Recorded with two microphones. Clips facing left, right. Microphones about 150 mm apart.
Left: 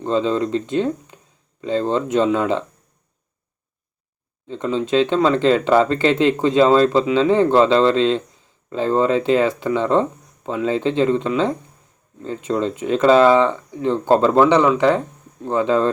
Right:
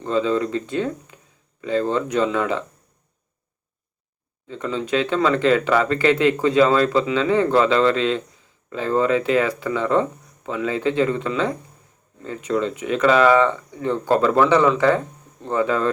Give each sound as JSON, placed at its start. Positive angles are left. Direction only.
{"t": 0.0, "sound": "speech", "side_deg": 25}
{"t": 4.4, "sound": "speech", "side_deg": 30}